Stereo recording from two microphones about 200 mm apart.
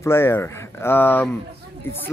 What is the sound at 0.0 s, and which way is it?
Speech, 10° left (ahead or behind).